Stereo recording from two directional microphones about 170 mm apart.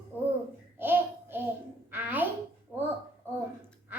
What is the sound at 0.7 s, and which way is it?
Babbling, 10° right (ahead or behind).